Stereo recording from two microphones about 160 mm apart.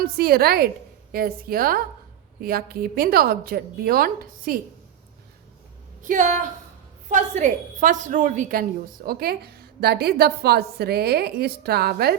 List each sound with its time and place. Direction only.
0.0 s a woman's voice: 75° right (ahead or behind)
6.0 s a woman's voice: 55° right (ahead or behind)
9.0 s a woman's voice: 70° right (ahead or behind)